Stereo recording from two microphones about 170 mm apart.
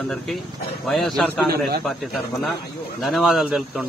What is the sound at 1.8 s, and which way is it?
A man's voice, centre (ahead or behind).